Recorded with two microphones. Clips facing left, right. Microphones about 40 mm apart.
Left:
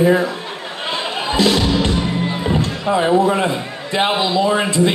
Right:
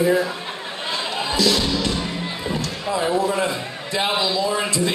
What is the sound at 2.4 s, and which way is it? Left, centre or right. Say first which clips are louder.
Speech: left 5 dB; left.